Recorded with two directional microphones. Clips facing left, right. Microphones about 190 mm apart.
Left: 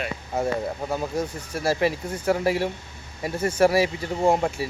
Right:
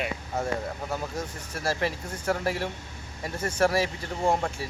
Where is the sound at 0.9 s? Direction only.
10° left (ahead or behind).